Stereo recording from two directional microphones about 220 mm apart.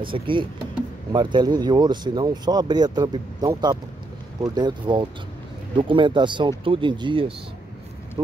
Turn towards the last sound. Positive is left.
turn(degrees=-25)  # may be behind; listen again after turning